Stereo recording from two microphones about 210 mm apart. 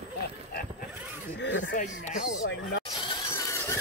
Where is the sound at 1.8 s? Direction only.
40° left (ahead or behind).